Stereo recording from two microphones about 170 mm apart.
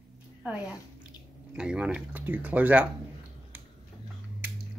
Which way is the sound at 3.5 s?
10° right (ahead or behind).